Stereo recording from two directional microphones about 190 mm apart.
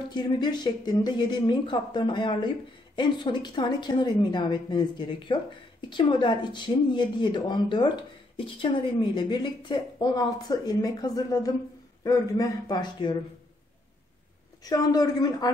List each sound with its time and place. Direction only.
0.1 s a woman's voice: 20° left (ahead or behind)
14.6 s a woman's voice: 20° left (ahead or behind)